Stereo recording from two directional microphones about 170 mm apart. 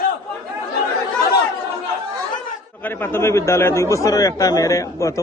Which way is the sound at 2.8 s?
15° left (ahead or behind).